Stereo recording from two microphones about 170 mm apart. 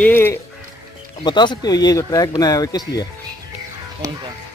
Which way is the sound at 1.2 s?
25° left (ahead or behind).